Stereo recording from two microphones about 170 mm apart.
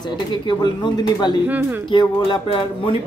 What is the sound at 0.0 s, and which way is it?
Speech, 25° left (ahead or behind).